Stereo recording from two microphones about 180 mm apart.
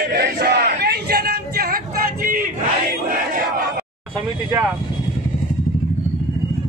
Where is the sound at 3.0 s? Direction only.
55° right (ahead or behind).